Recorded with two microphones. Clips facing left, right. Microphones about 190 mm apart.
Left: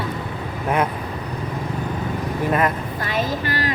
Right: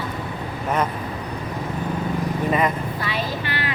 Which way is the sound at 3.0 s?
45° left (ahead or behind).